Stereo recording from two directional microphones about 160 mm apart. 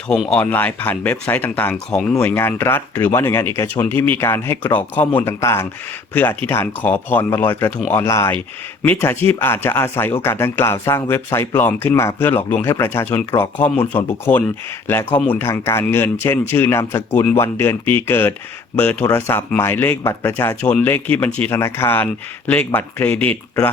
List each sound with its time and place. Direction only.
0.3 s speech: 10° left (ahead or behind)